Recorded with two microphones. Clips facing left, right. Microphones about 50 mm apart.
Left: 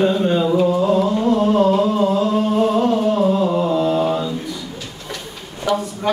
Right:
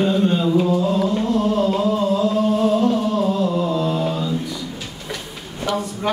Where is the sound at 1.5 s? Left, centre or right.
Left.